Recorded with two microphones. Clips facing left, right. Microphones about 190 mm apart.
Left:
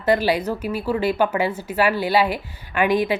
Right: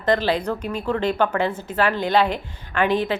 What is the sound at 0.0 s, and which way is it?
A woman's voice, 10° left (ahead or behind).